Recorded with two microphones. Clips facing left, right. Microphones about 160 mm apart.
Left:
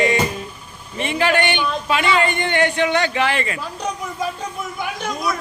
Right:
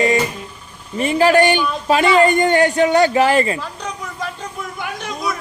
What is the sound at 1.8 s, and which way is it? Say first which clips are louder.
Music: right 7 dB; 40° right (ahead or behind).